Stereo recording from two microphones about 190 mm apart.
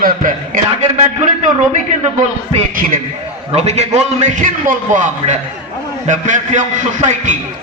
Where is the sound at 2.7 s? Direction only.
45° right (ahead or behind).